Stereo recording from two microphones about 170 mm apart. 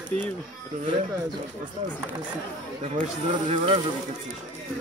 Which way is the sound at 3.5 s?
40° right (ahead or behind).